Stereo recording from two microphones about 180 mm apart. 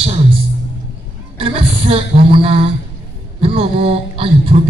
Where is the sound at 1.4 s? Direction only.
30° right (ahead or behind).